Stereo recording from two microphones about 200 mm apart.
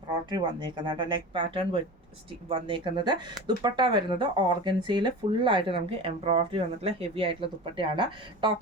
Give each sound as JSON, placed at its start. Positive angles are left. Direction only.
{"t": 0.3, "sound": "speech", "side_deg": -20}